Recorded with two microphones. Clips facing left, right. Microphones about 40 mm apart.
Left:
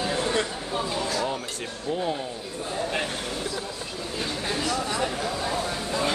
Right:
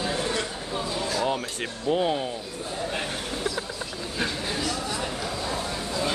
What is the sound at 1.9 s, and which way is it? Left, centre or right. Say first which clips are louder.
Speech: right 4 dB; right.